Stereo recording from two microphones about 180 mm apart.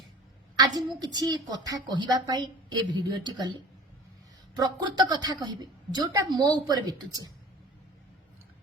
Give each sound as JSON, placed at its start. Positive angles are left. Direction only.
{"t": 0.6, "sound": "a woman's voice", "side_deg": -20}